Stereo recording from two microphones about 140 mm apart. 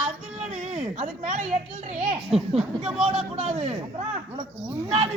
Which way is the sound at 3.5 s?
55° right (ahead or behind).